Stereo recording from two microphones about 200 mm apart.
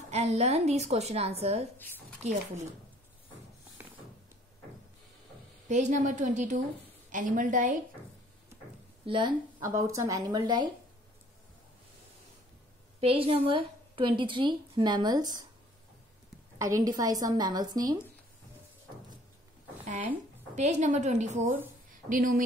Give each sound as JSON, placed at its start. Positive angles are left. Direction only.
{"t": 0.1, "sound": "speech", "side_deg": -35}
{"t": 5.7, "sound": "speech", "side_deg": -35}
{"t": 9.0, "sound": "a woman's voice", "side_deg": -25}
{"t": 13.0, "sound": "a woman's voice", "side_deg": -30}
{"t": 16.5, "sound": "a woman's voice", "side_deg": -15}
{"t": 20.5, "sound": "speech", "side_deg": -35}